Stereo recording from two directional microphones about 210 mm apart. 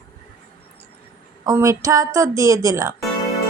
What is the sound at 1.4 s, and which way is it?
A woman's voice, 15° right (ahead or behind).